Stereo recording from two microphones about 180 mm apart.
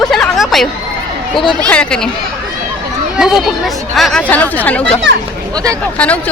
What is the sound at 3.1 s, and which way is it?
Speech, centre (ahead or behind).